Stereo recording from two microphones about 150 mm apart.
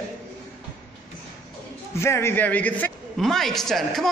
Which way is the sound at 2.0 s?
15° left (ahead or behind).